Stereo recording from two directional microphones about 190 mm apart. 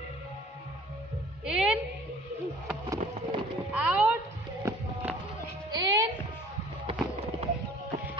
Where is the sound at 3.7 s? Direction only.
5° right (ahead or behind).